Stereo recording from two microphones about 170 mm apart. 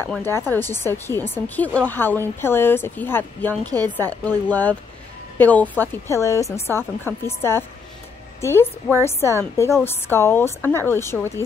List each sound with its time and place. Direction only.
0.2 s speech: 15° left (ahead or behind)